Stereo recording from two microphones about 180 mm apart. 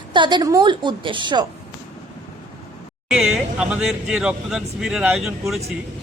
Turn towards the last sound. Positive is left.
turn(degrees=0)  # may be behind; listen again after turning